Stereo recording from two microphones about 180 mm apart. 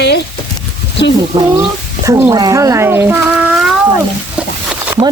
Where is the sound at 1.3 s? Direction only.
25° right (ahead or behind); by 3.7 s 5° right (ahead or behind).